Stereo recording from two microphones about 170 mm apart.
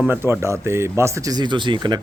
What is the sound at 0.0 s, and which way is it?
A man's voice, 15° right (ahead or behind).